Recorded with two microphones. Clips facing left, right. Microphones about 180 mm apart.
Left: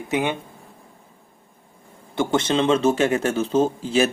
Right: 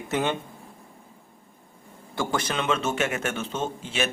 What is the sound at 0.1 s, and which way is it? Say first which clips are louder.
Speech: left 3 dB; 15° left (ahead or behind).